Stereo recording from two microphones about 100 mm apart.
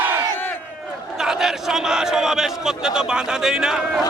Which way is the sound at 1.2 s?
5° right (ahead or behind).